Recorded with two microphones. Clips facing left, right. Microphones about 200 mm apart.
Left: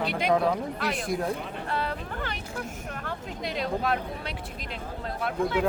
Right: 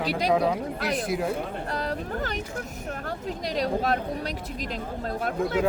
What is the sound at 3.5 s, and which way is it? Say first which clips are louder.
Speech: right 3 dB; 40° right (ahead or behind).